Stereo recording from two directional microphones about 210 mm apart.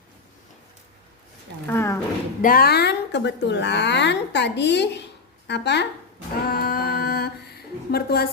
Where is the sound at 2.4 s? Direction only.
45° left (ahead or behind).